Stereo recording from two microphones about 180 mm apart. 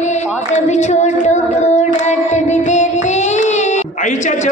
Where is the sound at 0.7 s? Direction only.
40° left (ahead or behind).